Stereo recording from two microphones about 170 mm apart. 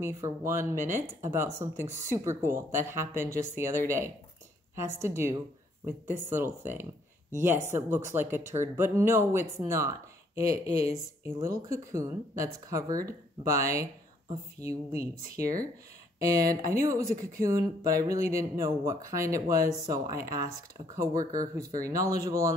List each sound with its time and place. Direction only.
0.0 s speech: 15° right (ahead or behind)